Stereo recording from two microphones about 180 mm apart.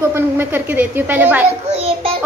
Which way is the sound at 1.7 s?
35° right (ahead or behind).